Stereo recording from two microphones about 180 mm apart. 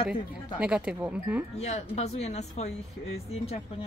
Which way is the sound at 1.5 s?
35° left (ahead or behind).